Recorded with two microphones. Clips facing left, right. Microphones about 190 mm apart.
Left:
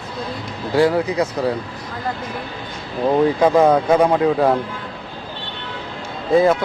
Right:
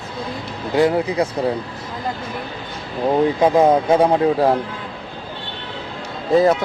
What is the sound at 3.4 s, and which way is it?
Speech, 20° right (ahead or behind).